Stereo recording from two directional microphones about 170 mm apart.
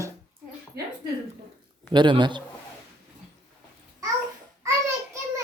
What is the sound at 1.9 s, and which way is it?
Speech, 25° right (ahead or behind).